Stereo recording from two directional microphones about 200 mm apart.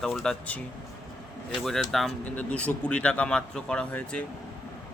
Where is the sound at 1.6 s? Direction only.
Centre (ahead or behind).